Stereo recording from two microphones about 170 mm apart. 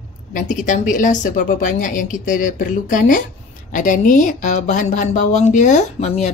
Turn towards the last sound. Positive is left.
turn(degrees=40)  # may be behind; listen again after turning